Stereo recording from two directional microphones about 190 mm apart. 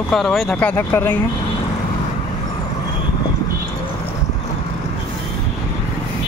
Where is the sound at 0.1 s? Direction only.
Centre (ahead or behind).